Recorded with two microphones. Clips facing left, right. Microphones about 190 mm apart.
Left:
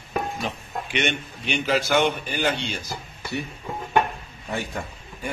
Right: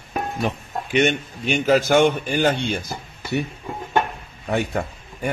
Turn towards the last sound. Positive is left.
turn(degrees=-65)  # may be behind; listen again after turning